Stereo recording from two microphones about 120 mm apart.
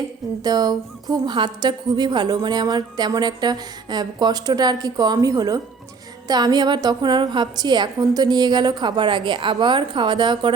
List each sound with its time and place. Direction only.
0.4 s a woman's voice: 35° right (ahead or behind)